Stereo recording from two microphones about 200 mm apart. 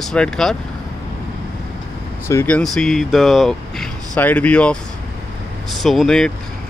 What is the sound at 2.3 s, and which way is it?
Speech, 10° left (ahead or behind).